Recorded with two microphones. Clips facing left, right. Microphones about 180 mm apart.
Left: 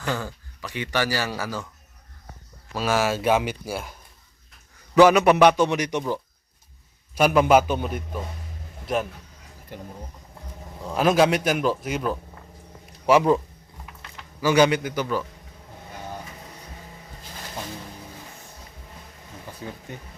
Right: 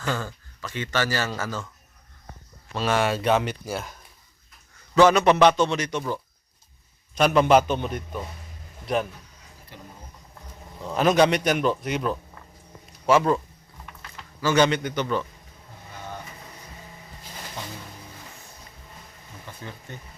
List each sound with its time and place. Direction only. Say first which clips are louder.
0.0 s speech: even; 15° left (ahead or behind)
2.7 s a man's voice: even; 5° left (ahead or behind)
4.9 s speech: left 2 dB; 10° left (ahead or behind)
7.2 s a man's voice: left 1 dB; 5° left (ahead or behind)
9.7 s speech: left 7 dB; 50° left (ahead or behind)
10.8 s a man's voice: even; 5° left (ahead or behind)
14.4 s speech: left 2 dB; 10° left (ahead or behind)